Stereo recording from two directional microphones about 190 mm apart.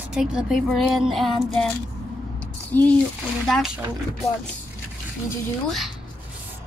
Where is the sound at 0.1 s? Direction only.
5° right (ahead or behind).